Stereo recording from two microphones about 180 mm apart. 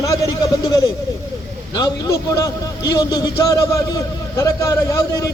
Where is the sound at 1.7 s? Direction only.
20° left (ahead or behind).